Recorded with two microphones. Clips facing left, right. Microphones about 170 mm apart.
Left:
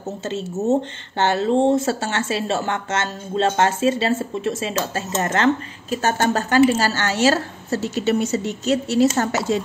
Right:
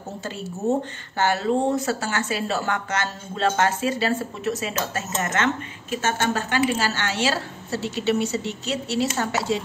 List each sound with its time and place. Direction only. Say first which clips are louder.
0.2 s speech: left 4 dB; 25° left (ahead or behind); by 9.6 s 45° left (ahead or behind)